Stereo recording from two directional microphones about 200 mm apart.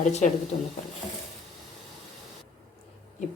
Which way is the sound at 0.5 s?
30° left (ahead or behind).